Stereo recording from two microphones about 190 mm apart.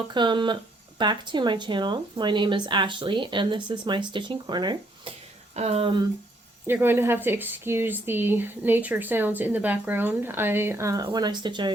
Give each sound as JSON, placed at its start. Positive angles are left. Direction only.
{"t": 0.1, "sound": "speech", "side_deg": -25}
{"t": 5.5, "sound": "speech", "side_deg": -30}
{"t": 6.7, "sound": "speech", "side_deg": -10}